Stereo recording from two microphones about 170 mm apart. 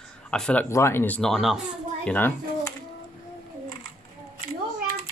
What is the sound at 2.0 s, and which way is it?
Speech, 10° left (ahead or behind).